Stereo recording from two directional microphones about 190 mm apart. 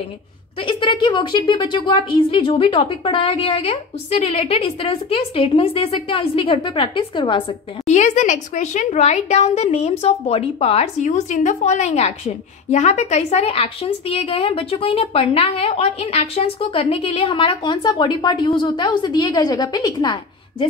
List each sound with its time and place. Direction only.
0.6 s a woman's voice: 25° left (ahead or behind)